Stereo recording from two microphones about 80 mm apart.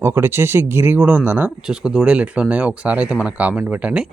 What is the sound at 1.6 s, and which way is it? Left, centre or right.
Speech, centre.